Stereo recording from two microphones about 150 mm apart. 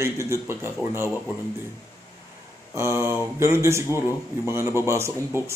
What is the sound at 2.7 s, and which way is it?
Speech, 20° right (ahead or behind).